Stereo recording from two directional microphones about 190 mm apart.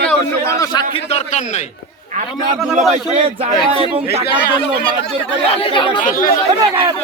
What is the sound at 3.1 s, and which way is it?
Speech, 30° right (ahead or behind).